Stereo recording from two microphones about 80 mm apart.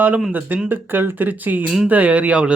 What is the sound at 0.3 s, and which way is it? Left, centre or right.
Speech, right.